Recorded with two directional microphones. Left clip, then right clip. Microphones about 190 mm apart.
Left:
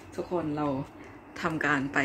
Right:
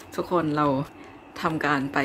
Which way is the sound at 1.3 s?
15° right (ahead or behind).